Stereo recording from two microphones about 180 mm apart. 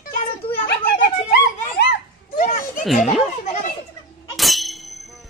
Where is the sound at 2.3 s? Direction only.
45° left (ahead or behind).